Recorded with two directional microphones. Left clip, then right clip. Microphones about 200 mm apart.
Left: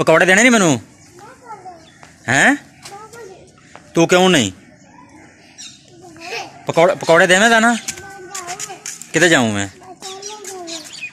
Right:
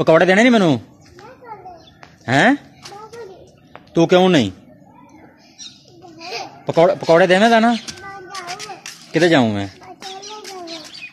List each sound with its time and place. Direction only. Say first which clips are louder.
0.0 s speech: left 1 dB; 5° right (ahead or behind)
2.2 s a sound: left 1 dB; 5° right (ahead or behind)
3.7 s a man's voice: left 1 dB; centre (ahead or behind)
6.6 s speech: even; 10° right (ahead or behind)
8.5 s chicken: left 1 dB; 5° right (ahead or behind)